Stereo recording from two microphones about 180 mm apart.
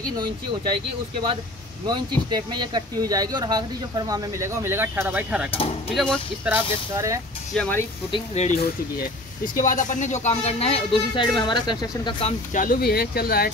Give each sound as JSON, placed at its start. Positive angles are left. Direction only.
{"t": 1.9, "sound": "speech", "side_deg": -25}
{"t": 5.9, "sound": "speech", "side_deg": 5}
{"t": 6.4, "sound": "speech", "side_deg": -15}
{"t": 7.5, "sound": "speech", "side_deg": 5}
{"t": 8.1, "sound": "speech", "side_deg": 40}
{"t": 8.5, "sound": "speech", "side_deg": 55}
{"t": 12.5, "sound": "speech", "side_deg": 55}